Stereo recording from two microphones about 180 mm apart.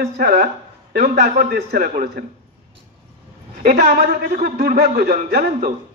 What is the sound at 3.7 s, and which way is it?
A man's voice, 55° right (ahead or behind).